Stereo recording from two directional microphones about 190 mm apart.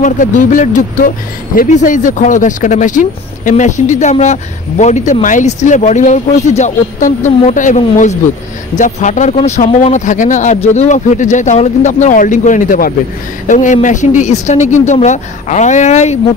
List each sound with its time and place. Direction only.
0.0 s speech: 40° left (ahead or behind)